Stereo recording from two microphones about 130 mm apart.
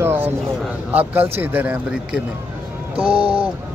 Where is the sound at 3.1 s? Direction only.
45° right (ahead or behind).